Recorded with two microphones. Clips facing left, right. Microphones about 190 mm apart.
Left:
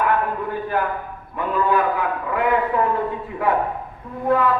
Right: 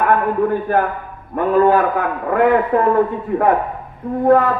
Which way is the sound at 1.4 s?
50° right (ahead or behind).